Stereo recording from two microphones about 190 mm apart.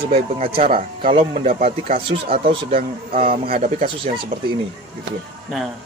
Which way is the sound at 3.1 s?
50° right (ahead or behind).